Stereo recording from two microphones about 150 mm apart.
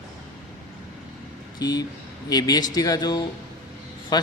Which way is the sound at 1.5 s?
25° left (ahead or behind).